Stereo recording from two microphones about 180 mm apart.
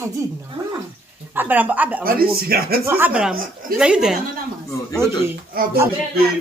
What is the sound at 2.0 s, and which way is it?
Speech, 55° right (ahead or behind).